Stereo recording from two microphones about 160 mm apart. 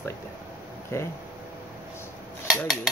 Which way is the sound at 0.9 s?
15° left (ahead or behind).